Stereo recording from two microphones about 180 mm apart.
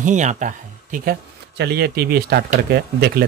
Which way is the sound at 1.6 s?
65° right (ahead or behind).